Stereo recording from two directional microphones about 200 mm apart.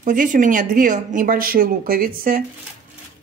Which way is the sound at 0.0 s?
40° right (ahead or behind).